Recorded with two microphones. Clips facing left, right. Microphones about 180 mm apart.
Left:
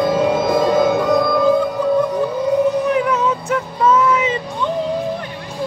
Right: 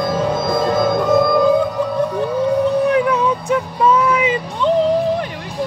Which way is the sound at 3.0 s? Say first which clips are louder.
Right 2 dB; 15° right (ahead or behind).